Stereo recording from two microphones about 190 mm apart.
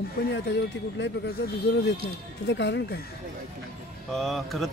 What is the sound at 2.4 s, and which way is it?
Speech, 65° left (ahead or behind).